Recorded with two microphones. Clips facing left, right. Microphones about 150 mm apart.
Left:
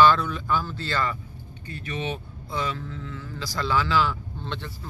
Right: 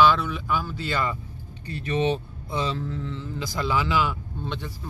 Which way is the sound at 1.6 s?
35° right (ahead or behind).